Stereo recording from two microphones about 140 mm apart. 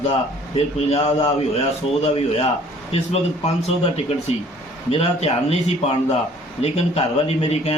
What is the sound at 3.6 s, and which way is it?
A man's voice, 50° left (ahead or behind).